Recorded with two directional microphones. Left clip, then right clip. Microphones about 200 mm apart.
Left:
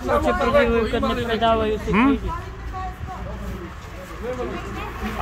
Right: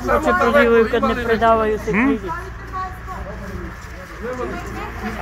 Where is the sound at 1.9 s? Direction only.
15° left (ahead or behind).